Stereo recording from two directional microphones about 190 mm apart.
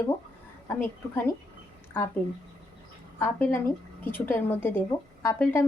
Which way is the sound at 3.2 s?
10° left (ahead or behind).